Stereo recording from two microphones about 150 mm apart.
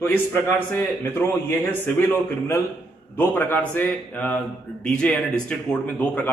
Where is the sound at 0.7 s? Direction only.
15° left (ahead or behind).